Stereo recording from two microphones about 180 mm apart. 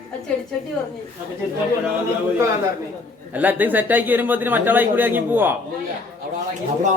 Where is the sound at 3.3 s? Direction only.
10° right (ahead or behind).